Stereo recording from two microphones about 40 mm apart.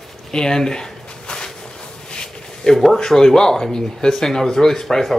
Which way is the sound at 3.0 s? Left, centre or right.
Centre.